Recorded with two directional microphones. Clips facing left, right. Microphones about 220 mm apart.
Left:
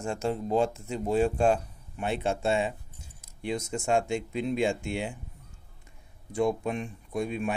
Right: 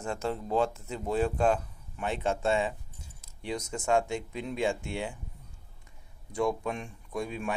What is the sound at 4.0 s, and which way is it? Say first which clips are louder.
Speech: left 2 dB; 25° left (ahead or behind).